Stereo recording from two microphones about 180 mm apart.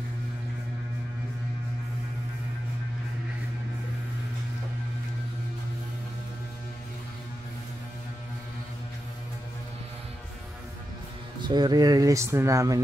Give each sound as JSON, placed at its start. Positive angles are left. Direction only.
{"t": 11.4, "sound": "speech", "side_deg": -25}